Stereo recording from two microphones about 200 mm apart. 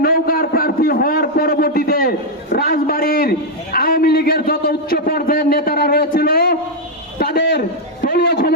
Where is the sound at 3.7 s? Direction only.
50° left (ahead or behind).